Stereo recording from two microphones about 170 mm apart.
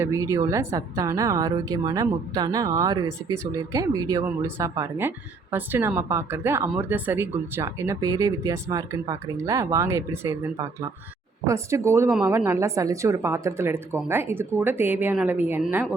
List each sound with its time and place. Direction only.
0.0 s a woman's voice: 20° right (ahead or behind)